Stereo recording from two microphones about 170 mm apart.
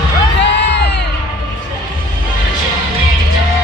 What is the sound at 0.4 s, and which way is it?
Music, 80° left.